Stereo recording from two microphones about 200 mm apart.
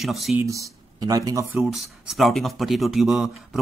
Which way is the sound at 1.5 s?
Centre (ahead or behind).